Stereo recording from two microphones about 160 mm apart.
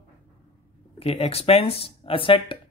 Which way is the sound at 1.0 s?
40° left (ahead or behind).